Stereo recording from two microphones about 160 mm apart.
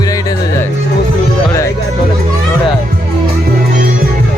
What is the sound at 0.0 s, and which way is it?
Music, 20° left (ahead or behind).